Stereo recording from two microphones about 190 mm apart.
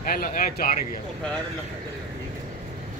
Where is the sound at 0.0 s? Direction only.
50° left (ahead or behind).